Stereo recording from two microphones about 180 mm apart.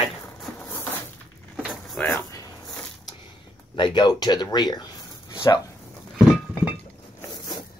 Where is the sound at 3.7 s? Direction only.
25° left (ahead or behind).